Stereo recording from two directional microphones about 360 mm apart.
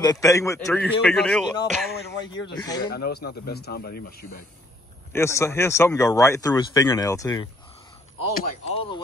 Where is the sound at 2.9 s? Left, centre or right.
Left.